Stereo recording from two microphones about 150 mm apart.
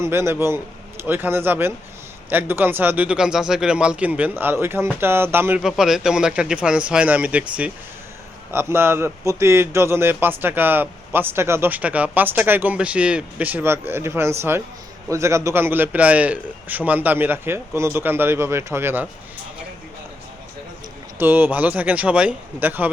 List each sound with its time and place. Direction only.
0.0 s a man's voice: 15° right (ahead or behind)
5.6 s a man's voice: 5° right (ahead or behind)
21.2 s a man's voice: 15° right (ahead or behind)